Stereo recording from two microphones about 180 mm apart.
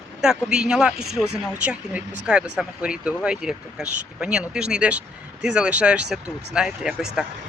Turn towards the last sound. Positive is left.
turn(degrees=-5)  # may be behind; listen again after turning